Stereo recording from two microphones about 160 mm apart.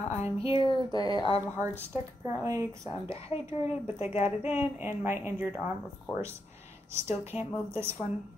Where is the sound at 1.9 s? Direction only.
20° right (ahead or behind).